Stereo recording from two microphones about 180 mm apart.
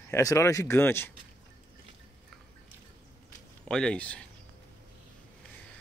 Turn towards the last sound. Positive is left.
turn(degrees=5)  # may be behind; listen again after turning